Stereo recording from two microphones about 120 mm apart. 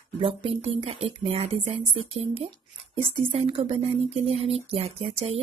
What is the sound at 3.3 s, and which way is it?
Speech, 55° right (ahead or behind).